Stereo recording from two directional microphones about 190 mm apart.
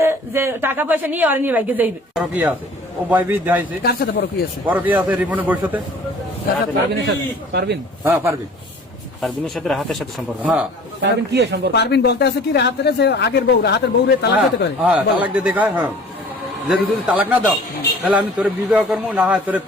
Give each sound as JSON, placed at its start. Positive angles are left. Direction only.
{"t": 0.0, "sound": "a woman's voice", "side_deg": -15}
{"t": 3.8, "sound": "a man's voice", "side_deg": 55}
{"t": 4.6, "sound": "a woman's voice", "side_deg": -10}
{"t": 6.9, "sound": "a man's voice", "side_deg": -60}
{"t": 8.0, "sound": "a woman's voice", "side_deg": -15}
{"t": 9.2, "sound": "a woman's voice", "side_deg": 0}
{"t": 11.0, "sound": "a man's voice", "side_deg": -65}
{"t": 11.7, "sound": "a man's voice", "side_deg": 60}
{"t": 14.8, "sound": "a woman's voice", "side_deg": -5}